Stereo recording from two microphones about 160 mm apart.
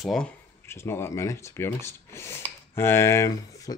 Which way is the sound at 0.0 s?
Centre (ahead or behind).